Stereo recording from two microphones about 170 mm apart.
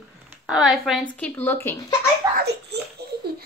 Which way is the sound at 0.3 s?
5° right (ahead or behind).